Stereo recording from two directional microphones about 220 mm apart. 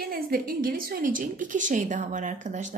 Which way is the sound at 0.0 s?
40° right (ahead or behind).